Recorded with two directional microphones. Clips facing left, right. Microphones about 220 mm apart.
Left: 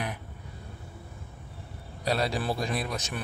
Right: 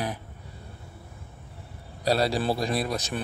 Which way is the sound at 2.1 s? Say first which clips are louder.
Right 4 dB; 35° right (ahead or behind).